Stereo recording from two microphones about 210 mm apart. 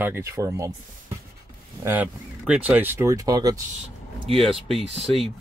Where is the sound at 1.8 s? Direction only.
10° right (ahead or behind).